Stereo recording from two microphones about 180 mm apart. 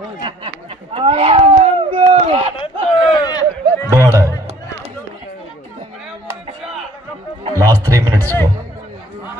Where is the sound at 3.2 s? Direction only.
20° left (ahead or behind).